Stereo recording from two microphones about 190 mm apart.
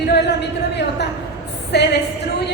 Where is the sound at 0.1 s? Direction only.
60° left (ahead or behind).